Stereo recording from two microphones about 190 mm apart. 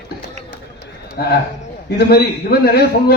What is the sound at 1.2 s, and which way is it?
A man's voice, 55° left (ahead or behind).